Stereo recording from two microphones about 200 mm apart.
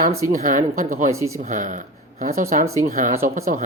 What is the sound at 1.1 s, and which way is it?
Speech, 15° right (ahead or behind).